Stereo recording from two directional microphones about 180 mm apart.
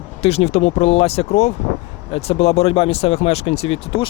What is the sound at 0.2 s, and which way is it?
Speech, 35° left (ahead or behind).